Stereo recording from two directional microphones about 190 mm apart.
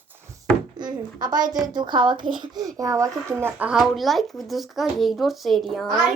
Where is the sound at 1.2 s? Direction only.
20° right (ahead or behind).